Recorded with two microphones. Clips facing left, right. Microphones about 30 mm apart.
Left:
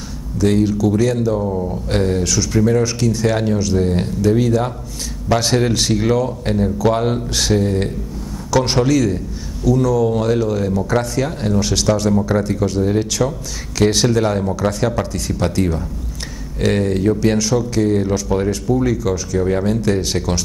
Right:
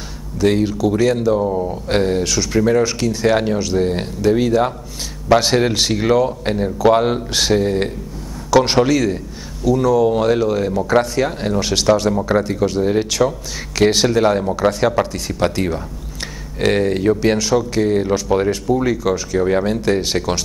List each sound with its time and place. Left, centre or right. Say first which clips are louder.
0.4 s speech: even; centre